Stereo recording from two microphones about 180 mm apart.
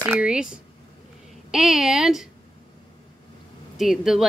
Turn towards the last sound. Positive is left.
turn(degrees=-5)  # may be behind; listen again after turning